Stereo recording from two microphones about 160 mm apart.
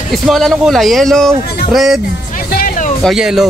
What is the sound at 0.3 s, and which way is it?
Speech, centre (ahead or behind).